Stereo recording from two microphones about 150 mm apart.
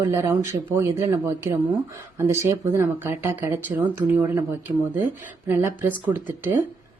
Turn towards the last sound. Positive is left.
turn(degrees=-15)  # may be behind; listen again after turning